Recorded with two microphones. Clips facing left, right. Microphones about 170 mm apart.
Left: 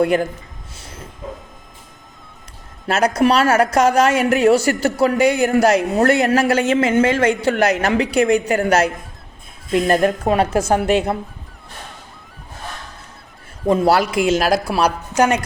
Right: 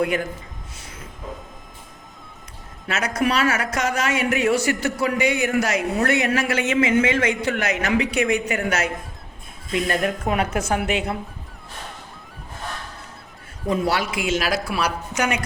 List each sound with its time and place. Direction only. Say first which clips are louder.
0.0 s speech: left 6 dB; 35° left (ahead or behind)
3.2 s speech: left 6 dB; 35° left (ahead or behind)
13.7 s a woman's voice: left 7 dB; 40° left (ahead or behind)